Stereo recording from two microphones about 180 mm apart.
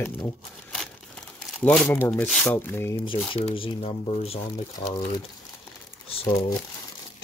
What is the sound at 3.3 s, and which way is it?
Speech, 30° left (ahead or behind).